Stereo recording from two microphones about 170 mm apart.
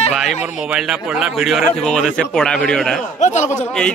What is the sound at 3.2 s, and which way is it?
Speech, 45° left (ahead or behind).